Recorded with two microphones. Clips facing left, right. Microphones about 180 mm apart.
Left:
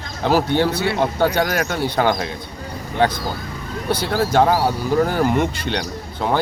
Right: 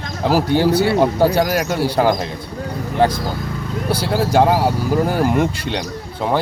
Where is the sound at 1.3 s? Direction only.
5° right (ahead or behind).